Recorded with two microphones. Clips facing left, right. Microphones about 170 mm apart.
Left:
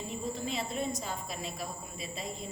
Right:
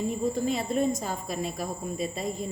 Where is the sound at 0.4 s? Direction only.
45° right (ahead or behind).